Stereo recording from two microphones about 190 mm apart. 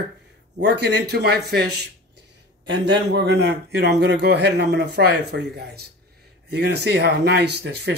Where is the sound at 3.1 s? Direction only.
65° right (ahead or behind).